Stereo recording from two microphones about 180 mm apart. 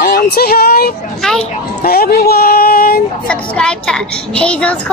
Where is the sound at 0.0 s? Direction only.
60° left (ahead or behind).